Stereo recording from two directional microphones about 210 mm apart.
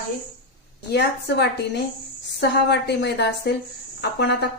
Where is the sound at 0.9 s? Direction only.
55° left (ahead or behind).